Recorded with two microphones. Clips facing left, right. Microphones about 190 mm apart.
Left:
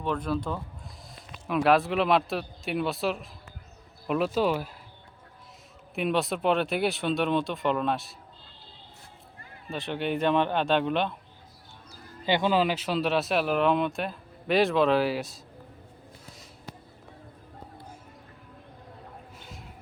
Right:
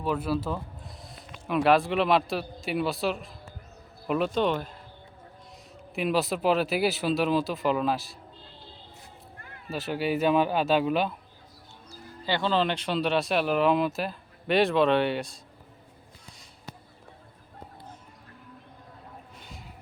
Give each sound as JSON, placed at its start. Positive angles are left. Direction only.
{"t": 0.0, "sound": "a man's voice", "side_deg": -5}
{"t": 5.9, "sound": "speech", "side_deg": 0}
{"t": 9.6, "sound": "speech", "side_deg": -5}
{"t": 11.9, "sound": "speech", "side_deg": 15}